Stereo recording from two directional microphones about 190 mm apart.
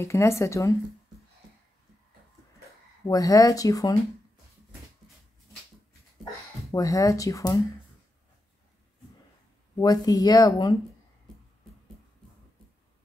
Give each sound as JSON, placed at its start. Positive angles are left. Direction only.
{"t": 0.0, "sound": "speech", "side_deg": 15}
{"t": 3.1, "sound": "speech", "side_deg": 20}
{"t": 6.7, "sound": "speech", "side_deg": 20}
{"t": 9.8, "sound": "speech", "side_deg": 20}